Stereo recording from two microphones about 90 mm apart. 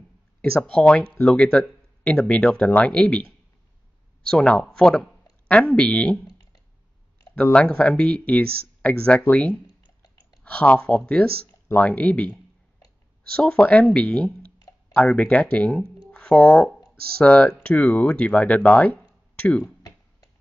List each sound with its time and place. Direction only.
0.4 s speech: 10° left (ahead or behind)
4.3 s speech: 10° left (ahead or behind)
6.2 s clicking: 45° left (ahead or behind)
7.5 s speech: 10° left (ahead or behind)
13.4 s speech: 10° left (ahead or behind)
19.3 s a sound: 15° left (ahead or behind)
19.6 s tick-tock: 40° left (ahead or behind)